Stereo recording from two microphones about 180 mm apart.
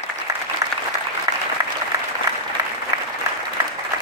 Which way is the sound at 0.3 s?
20° right (ahead or behind).